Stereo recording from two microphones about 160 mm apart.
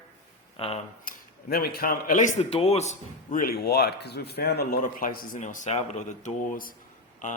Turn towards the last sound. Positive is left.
turn(degrees=50)  # may be behind; listen again after turning